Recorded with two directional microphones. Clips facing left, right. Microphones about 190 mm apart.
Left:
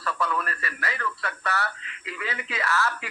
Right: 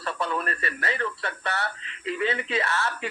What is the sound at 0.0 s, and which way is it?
Speech, 25° right (ahead or behind).